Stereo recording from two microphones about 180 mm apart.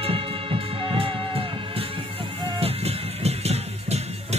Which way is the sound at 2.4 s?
35° right (ahead or behind).